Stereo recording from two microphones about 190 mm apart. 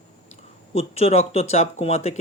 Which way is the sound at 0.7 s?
30° left (ahead or behind).